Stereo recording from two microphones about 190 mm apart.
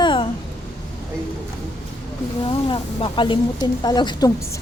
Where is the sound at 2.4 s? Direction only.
25° left (ahead or behind).